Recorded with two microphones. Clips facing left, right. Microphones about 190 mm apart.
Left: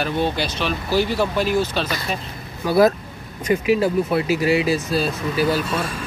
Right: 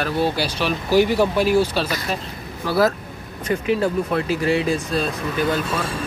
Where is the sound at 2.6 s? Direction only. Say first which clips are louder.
Left 3 dB; 15° left (ahead or behind).